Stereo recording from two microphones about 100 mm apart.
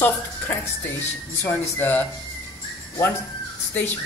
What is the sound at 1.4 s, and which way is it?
Speech, 20° left (ahead or behind).